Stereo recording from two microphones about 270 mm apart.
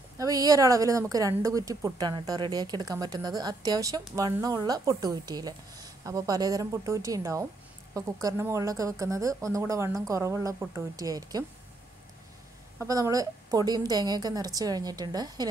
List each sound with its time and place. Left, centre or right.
0.2 s a woman's voice: centre
12.7 s a woman's voice: centre